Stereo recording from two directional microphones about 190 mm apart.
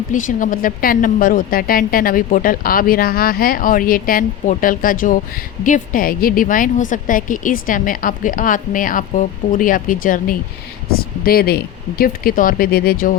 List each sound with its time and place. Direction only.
0.1 s speech: 45° left (ahead or behind)